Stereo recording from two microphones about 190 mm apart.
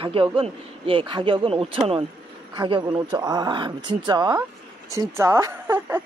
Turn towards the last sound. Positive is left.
turn(degrees=-10)  # may be behind; listen again after turning